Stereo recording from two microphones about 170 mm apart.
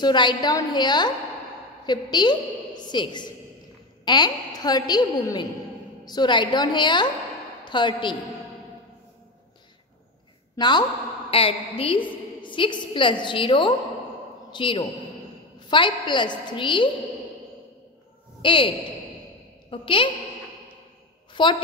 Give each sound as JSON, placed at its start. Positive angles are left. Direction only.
{"t": 0.0, "sound": "a woman's voice", "side_deg": 25}
{"t": 10.5, "sound": "a woman's voice", "side_deg": 25}
{"t": 18.4, "sound": "speech", "side_deg": 30}
{"t": 19.7, "sound": "a woman's voice", "side_deg": 30}
{"t": 21.3, "sound": "a sound", "side_deg": 30}